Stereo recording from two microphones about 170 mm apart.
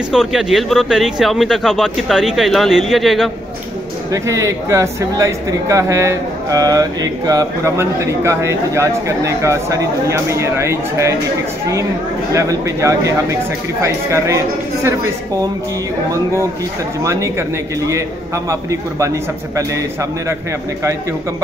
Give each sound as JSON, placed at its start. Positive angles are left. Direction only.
{"t": 0.1, "sound": "speech", "side_deg": 0}
{"t": 4.1, "sound": "speech", "side_deg": -20}
{"t": 12.3, "sound": "speech", "side_deg": -20}
{"t": 17.0, "sound": "speech", "side_deg": -20}